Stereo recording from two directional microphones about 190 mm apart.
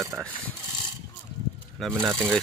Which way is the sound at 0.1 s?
10° right (ahead or behind).